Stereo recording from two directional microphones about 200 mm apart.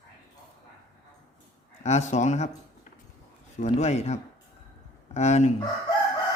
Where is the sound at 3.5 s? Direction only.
35° left (ahead or behind).